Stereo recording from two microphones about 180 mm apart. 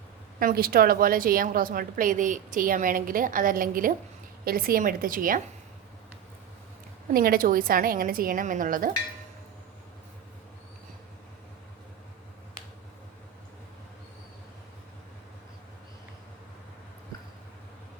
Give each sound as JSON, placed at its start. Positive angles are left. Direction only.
{"t": 0.3, "sound": "a woman's voice", "side_deg": -55}
{"t": 7.1, "sound": "a woman's voice", "side_deg": -55}